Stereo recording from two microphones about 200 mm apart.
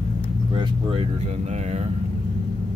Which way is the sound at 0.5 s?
25° right (ahead or behind).